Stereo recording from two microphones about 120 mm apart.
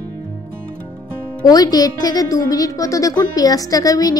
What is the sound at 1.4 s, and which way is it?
Speech, 30° left (ahead or behind).